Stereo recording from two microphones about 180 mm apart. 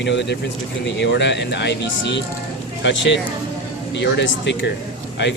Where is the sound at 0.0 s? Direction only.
75° left (ahead or behind).